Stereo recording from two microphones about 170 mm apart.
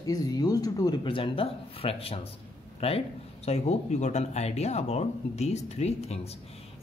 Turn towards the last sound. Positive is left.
turn(degrees=40)  # may be behind; listen again after turning